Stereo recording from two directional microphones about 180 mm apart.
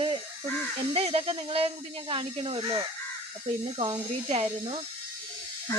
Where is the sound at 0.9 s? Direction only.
35° right (ahead or behind).